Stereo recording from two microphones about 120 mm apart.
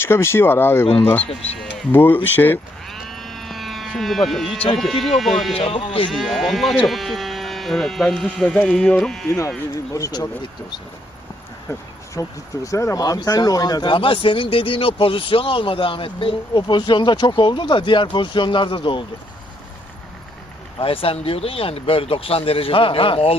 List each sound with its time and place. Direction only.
0.0 s speech: 20° left (ahead or behind)
2.8 s sheep: centre (ahead or behind)
4.8 s speech: centre (ahead or behind)
5.5 s speech: 50° left (ahead or behind)
6.1 s speech: centre (ahead or behind)
9.9 s speech: 30° left (ahead or behind)
11.7 s speech: 25° left (ahead or behind); by 19.0 s 45° left (ahead or behind)
20.7 s speech: 50° left (ahead or behind)